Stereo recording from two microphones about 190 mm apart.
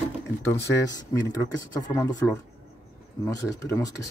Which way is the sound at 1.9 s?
15° left (ahead or behind).